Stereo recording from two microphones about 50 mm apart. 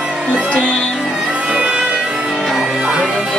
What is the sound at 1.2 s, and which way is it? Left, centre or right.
Music, right.